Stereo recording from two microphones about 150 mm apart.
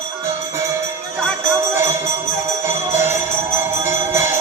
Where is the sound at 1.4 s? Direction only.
20° right (ahead or behind).